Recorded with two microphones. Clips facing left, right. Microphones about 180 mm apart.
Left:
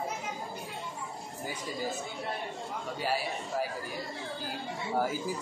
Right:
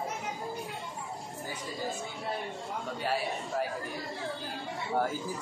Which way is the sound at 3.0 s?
Centre (ahead or behind).